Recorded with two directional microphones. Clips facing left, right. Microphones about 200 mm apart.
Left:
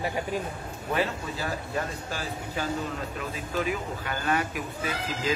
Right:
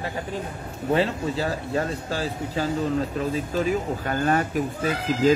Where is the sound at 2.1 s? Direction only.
35° right (ahead or behind).